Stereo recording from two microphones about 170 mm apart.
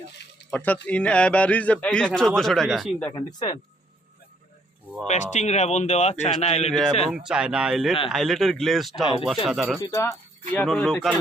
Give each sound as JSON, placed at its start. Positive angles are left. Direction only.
{"t": 0.5, "sound": "a man's voice", "side_deg": 10}
{"t": 3.1, "sound": "speech", "side_deg": 25}
{"t": 5.0, "sound": "a man's voice", "side_deg": 45}
{"t": 7.1, "sound": "speech", "side_deg": -5}
{"t": 9.8, "sound": "a man's voice", "side_deg": 15}